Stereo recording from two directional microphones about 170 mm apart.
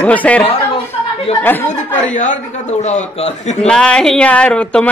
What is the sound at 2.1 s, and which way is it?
A man's voice, 45° left (ahead or behind).